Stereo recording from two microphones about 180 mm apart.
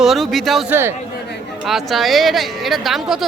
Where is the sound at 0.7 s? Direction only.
10° right (ahead or behind).